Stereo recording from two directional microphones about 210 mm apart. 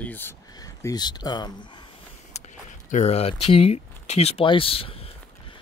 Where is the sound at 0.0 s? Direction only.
10° left (ahead or behind).